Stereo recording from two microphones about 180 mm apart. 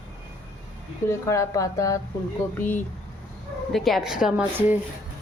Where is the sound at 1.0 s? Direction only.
15° left (ahead or behind); by 4.8 s 10° right (ahead or behind).